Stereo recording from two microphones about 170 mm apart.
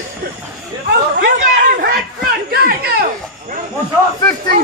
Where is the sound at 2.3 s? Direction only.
60° right (ahead or behind).